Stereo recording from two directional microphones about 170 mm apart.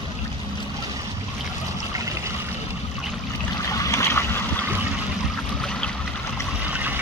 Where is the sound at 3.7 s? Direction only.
15° left (ahead or behind).